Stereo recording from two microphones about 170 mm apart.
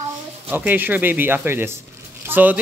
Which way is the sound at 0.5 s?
10° right (ahead or behind).